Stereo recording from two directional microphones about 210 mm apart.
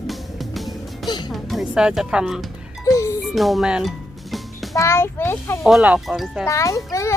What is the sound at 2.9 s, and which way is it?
Music, 15° left (ahead or behind).